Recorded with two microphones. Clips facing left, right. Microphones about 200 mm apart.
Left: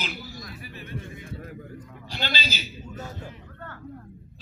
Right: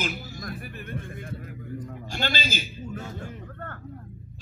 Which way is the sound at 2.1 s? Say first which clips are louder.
Right 2 dB; 50° right (ahead or behind).